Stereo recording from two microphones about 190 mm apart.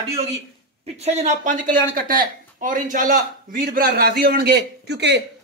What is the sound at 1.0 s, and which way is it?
Speech, 35° right (ahead or behind).